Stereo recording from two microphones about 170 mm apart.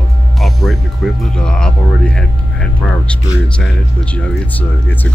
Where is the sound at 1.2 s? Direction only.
5° left (ahead or behind).